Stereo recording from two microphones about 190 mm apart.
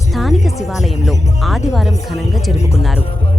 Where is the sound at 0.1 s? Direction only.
Centre (ahead or behind).